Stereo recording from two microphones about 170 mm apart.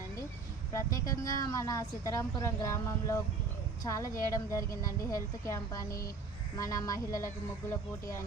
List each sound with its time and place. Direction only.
0.7 s a woman's voice: 20° left (ahead or behind)